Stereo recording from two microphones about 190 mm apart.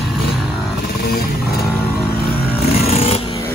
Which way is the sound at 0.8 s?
55° left (ahead or behind).